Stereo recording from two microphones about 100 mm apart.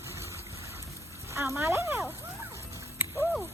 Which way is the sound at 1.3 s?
30° right (ahead or behind).